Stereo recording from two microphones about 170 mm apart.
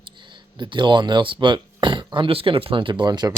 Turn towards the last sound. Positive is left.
turn(degrees=-25)  # may be behind; listen again after turning